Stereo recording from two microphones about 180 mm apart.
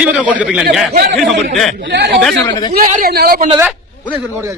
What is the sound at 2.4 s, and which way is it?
Speech, 25° left (ahead or behind).